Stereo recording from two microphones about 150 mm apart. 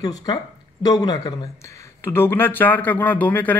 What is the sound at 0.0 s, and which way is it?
Speech, 25° left (ahead or behind).